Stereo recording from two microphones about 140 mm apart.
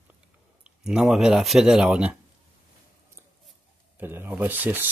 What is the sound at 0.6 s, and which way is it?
Speech, 5° right (ahead or behind).